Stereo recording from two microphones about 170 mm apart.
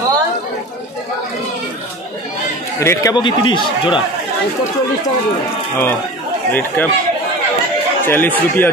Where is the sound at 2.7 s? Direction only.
20° left (ahead or behind).